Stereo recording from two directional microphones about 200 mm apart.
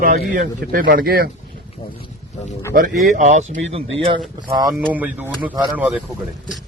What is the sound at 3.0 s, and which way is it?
Speech, 40° right (ahead or behind).